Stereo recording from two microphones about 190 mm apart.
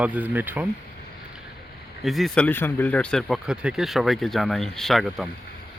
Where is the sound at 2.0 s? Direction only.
Centre (ahead or behind).